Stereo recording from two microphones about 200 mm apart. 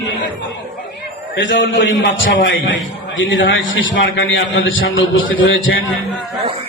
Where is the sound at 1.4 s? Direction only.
65° left (ahead or behind).